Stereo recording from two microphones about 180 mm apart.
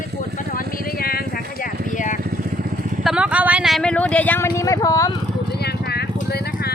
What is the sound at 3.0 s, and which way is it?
Speech, 5° right (ahead or behind).